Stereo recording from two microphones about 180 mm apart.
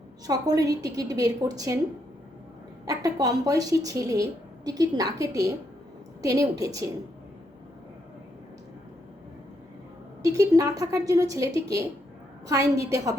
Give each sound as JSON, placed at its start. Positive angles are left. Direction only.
{"t": 0.3, "sound": "speech", "side_deg": -20}
{"t": 2.8, "sound": "speech", "side_deg": -20}
{"t": 10.2, "sound": "speech", "side_deg": -20}